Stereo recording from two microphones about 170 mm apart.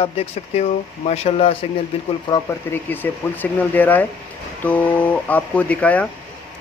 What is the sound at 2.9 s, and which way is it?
Speech, 10° left (ahead or behind).